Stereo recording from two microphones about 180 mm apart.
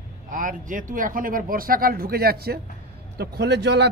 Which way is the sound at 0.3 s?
50° right (ahead or behind).